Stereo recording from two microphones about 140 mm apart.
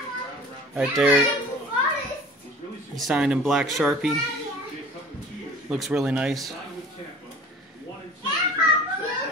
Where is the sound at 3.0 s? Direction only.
5° right (ahead or behind).